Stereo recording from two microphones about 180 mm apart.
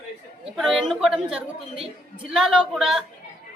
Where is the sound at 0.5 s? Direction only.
Centre (ahead or behind).